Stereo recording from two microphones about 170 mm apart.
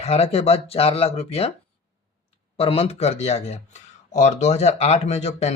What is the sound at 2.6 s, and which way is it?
Speech, 35° left (ahead or behind).